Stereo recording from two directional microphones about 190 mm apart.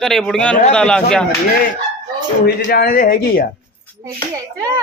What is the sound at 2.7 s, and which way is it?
Speech, 50° left (ahead or behind).